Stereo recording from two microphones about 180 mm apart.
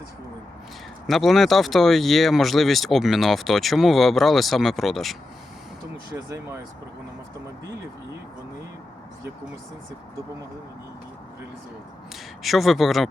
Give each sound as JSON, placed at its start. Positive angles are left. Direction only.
{"t": 1.0, "sound": "speech", "side_deg": 0}
{"t": 6.1, "sound": "speech", "side_deg": -15}
{"t": 12.4, "sound": "speech", "side_deg": 0}